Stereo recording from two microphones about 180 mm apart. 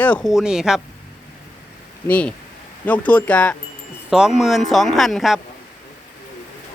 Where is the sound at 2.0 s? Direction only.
10° left (ahead or behind).